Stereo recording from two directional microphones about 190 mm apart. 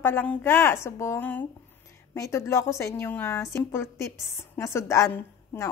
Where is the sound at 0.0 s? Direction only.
10° left (ahead or behind).